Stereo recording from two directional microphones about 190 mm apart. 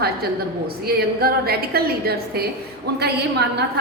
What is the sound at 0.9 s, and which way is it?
A woman's voice, 55° right (ahead or behind).